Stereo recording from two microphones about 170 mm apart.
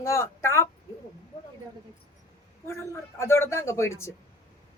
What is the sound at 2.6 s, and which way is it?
Speech, 15° left (ahead or behind).